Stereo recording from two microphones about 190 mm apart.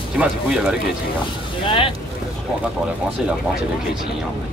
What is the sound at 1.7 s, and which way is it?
Speech, 30° left (ahead or behind).